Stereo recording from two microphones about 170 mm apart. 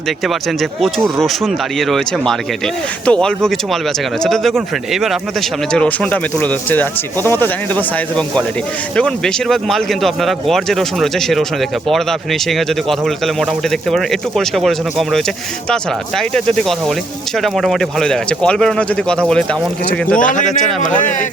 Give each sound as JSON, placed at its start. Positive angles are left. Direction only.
{"t": 0.3, "sound": "speech", "side_deg": 0}
{"t": 20.1, "sound": "speech", "side_deg": 50}